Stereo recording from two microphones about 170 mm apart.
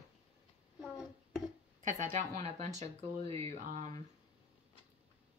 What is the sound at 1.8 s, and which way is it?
Speech, 45° right (ahead or behind).